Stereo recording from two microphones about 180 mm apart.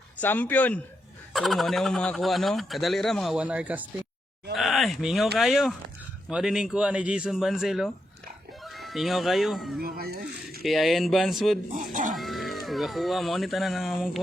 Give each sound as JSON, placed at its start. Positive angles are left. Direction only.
{"t": 0.2, "sound": "speech", "side_deg": 10}
{"t": 9.8, "sound": "speech", "side_deg": -55}
{"t": 10.6, "sound": "speech", "side_deg": 0}
{"t": 11.7, "sound": "speech", "side_deg": -45}
{"t": 12.1, "sound": "speech", "side_deg": 0}